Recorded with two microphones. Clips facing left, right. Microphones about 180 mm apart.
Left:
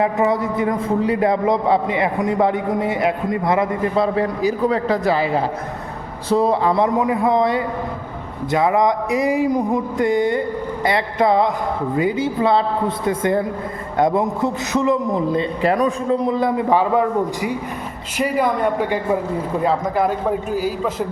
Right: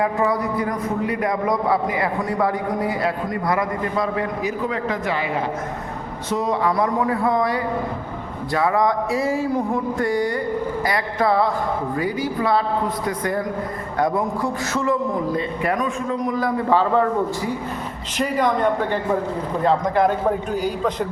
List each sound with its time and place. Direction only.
0.0 s a man's voice: 25° left (ahead or behind); by 21.1 s 5° left (ahead or behind)